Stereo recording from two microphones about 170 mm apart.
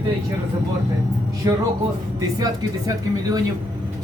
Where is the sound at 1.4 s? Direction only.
20° right (ahead or behind).